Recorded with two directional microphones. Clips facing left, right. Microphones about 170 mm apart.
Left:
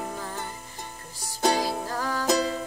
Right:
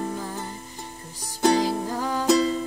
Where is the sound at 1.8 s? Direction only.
15° right (ahead or behind).